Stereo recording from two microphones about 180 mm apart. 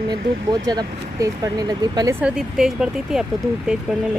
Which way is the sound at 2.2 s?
5° right (ahead or behind).